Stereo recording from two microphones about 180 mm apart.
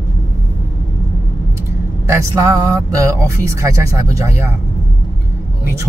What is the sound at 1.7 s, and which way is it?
Vehicle, 15° right (ahead or behind).